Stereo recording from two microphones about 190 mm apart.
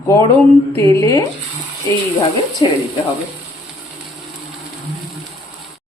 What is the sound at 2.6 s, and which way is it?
Speech, 25° left (ahead or behind).